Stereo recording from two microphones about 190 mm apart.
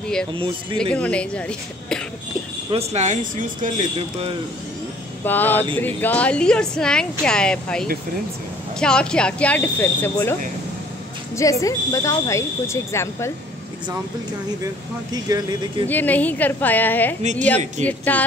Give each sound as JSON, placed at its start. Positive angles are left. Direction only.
{"t": 0.3, "sound": "speech", "side_deg": -25}
{"t": 0.7, "sound": "speech", "side_deg": 5}
{"t": 2.7, "sound": "speech", "side_deg": -35}
{"t": 5.2, "sound": "speech", "side_deg": 10}
{"t": 11.3, "sound": "speech", "side_deg": 15}
{"t": 15.3, "sound": "speech", "side_deg": -20}
{"t": 15.9, "sound": "speech", "side_deg": 10}
{"t": 17.2, "sound": "speech", "side_deg": -40}
{"t": 17.8, "sound": "speech", "side_deg": 10}